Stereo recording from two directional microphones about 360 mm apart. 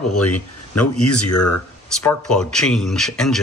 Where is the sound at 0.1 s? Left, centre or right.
Left.